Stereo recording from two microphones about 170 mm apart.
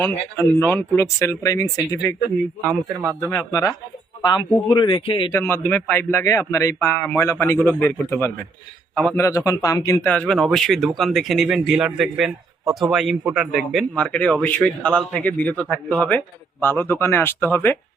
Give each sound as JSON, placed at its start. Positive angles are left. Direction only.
{"t": 0.0, "sound": "a man's voice", "side_deg": 15}
{"t": 3.2, "sound": "a man's voice", "side_deg": 15}
{"t": 5.3, "sound": "a man's voice", "side_deg": 15}
{"t": 10.1, "sound": "a man's voice", "side_deg": 5}